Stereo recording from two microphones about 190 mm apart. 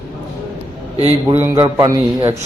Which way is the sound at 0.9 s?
35° right (ahead or behind).